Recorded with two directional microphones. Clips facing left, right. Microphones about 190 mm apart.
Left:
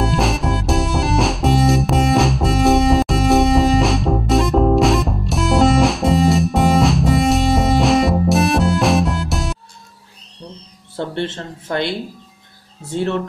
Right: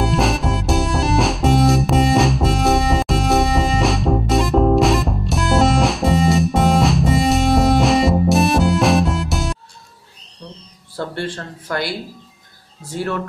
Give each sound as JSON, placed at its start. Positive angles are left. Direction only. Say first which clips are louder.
{"t": 0.0, "sound": "music", "louder": "even", "side_deg": 0}
{"t": 11.0, "sound": "a sound", "louder": "left 2 dB", "side_deg": 20}
{"t": 12.8, "sound": "speech", "louder": "left 3 dB", "side_deg": 25}